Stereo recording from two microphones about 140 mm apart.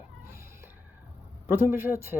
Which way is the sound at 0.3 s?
20° right (ahead or behind).